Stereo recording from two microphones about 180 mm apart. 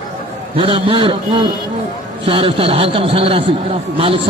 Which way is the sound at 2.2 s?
30° right (ahead or behind).